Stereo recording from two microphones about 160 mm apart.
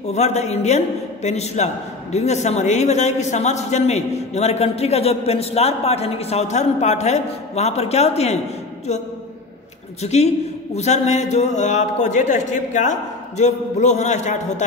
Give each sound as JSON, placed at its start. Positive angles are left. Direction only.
{"t": 0.1, "sound": "a man's voice", "side_deg": 45}
{"t": 10.0, "sound": "a man's voice", "side_deg": 45}